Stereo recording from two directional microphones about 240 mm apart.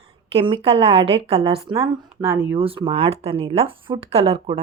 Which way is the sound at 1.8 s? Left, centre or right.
Centre.